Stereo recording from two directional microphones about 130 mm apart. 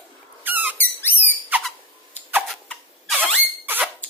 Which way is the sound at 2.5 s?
Centre (ahead or behind).